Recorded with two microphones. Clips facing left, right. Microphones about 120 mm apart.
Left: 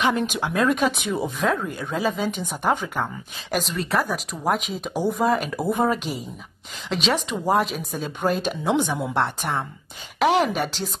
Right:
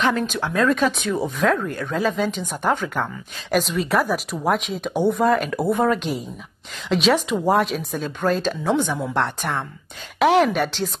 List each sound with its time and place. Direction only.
0.0 s a woman's voice: 15° left (ahead or behind)
1.2 s a woman's voice: centre (ahead or behind)
3.5 s speech: centre (ahead or behind)
8.2 s a woman's voice: 15° left (ahead or behind)